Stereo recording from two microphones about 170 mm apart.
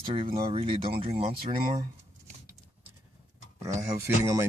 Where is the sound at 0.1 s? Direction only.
30° right (ahead or behind).